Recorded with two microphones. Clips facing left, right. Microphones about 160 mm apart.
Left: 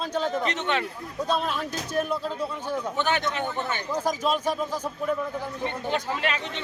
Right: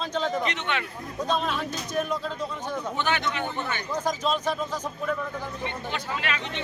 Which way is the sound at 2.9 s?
45° left (ahead or behind).